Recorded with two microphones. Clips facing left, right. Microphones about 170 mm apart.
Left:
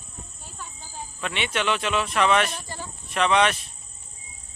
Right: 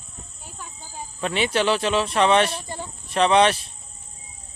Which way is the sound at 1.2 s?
35° right (ahead or behind).